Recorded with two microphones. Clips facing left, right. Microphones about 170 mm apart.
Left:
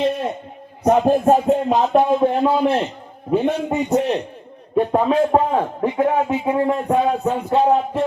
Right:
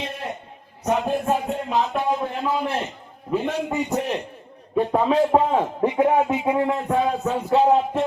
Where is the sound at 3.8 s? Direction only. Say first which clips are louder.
Left 7 dB; 65° left (ahead or behind).